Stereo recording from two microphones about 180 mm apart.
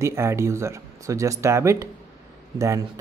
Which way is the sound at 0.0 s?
15° right (ahead or behind).